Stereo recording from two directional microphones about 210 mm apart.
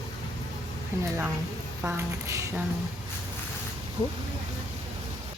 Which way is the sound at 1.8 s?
10° right (ahead or behind).